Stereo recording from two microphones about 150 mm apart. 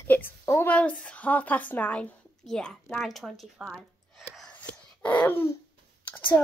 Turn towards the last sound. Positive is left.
turn(degrees=10)  # may be behind; listen again after turning